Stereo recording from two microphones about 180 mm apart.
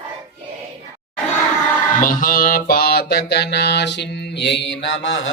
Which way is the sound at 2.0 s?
50° left (ahead or behind).